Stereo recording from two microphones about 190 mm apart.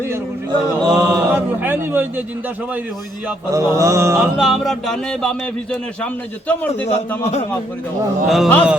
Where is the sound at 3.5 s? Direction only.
15° right (ahead or behind).